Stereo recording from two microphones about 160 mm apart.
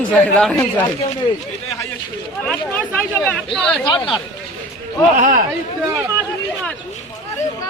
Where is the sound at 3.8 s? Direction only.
25° left (ahead or behind).